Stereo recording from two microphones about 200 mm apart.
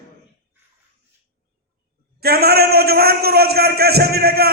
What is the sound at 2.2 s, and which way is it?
A man's voice, 50° right (ahead or behind).